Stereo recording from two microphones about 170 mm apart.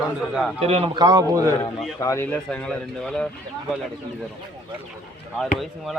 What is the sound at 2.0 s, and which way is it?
Speech, 15° left (ahead or behind).